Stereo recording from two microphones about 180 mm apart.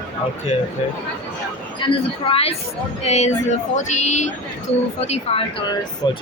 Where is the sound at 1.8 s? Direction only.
30° left (ahead or behind).